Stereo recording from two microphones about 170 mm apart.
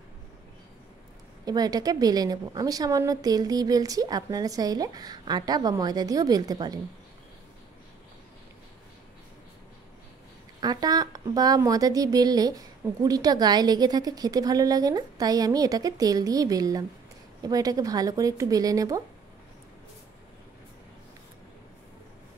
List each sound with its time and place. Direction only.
1.4 s a woman's voice: 20° right (ahead or behind)
10.6 s a woman's voice: 25° right (ahead or behind)